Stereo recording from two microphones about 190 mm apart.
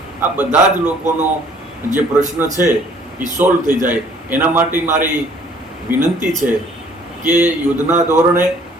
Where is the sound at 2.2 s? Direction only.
40° right (ahead or behind).